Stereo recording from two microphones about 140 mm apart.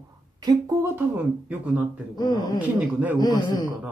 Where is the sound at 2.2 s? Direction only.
30° left (ahead or behind).